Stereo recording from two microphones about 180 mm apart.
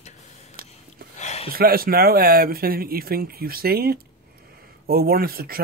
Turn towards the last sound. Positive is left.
turn(degrees=-55)  # may be behind; listen again after turning